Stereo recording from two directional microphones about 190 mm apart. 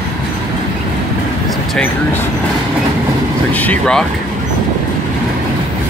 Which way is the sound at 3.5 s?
10° left (ahead or behind).